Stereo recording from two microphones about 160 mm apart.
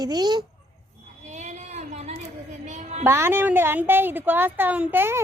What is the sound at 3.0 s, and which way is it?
A woman's voice, 15° right (ahead or behind).